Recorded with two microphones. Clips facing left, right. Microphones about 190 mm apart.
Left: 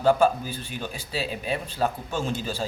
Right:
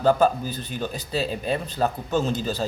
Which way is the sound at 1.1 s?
40° right (ahead or behind).